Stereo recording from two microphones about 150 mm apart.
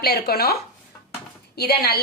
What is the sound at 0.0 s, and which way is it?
A woman's voice, 90° left.